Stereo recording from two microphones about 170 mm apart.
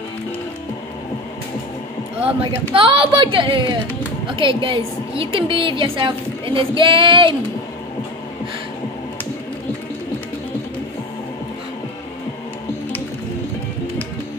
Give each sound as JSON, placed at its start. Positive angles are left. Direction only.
{"t": 2.7, "sound": "a woman's voice", "side_deg": -30}